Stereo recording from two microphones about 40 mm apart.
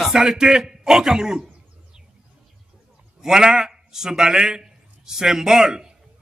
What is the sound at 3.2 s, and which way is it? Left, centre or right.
A man's voice, centre.